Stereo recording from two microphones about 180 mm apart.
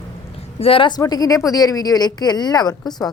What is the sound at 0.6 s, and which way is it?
A woman's voice, 30° left (ahead or behind).